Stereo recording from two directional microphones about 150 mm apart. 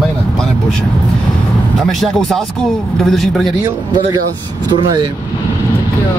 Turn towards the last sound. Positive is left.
turn(degrees=-30)  # may be behind; listen again after turning